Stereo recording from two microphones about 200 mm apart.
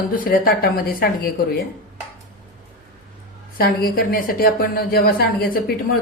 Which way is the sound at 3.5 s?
50° left (ahead or behind).